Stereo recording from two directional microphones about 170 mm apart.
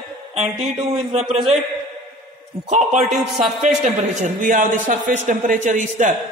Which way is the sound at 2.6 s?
45° right (ahead or behind).